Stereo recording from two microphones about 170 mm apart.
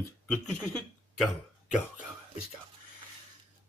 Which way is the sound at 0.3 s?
5° left (ahead or behind).